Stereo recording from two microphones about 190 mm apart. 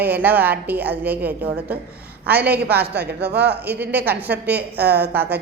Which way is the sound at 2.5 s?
60° right (ahead or behind).